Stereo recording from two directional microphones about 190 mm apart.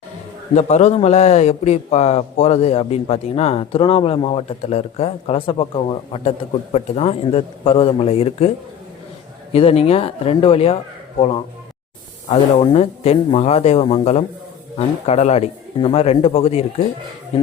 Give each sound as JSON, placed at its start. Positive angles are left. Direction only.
{"t": 0.5, "sound": "a man's voice", "side_deg": 35}
{"t": 12.3, "sound": "a man's voice", "side_deg": 30}